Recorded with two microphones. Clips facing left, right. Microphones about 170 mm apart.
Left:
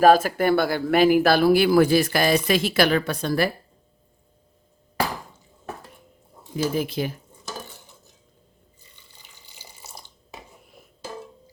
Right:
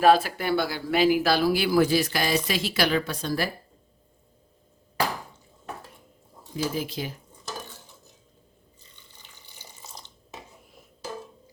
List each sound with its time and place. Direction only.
0.0 s speech: 45° left (ahead or behind)
6.7 s speech: 55° left (ahead or behind)
9.2 s water tap: 10° left (ahead or behind)